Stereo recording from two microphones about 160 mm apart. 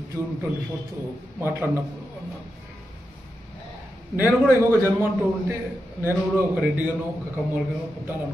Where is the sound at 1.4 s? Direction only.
10° right (ahead or behind).